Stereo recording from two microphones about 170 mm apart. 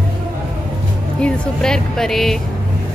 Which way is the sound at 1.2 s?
5° left (ahead or behind).